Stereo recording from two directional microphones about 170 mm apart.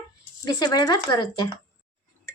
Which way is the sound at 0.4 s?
25° left (ahead or behind).